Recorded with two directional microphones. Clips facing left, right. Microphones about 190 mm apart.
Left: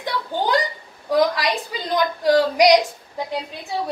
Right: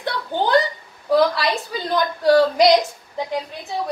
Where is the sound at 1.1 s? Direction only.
15° left (ahead or behind).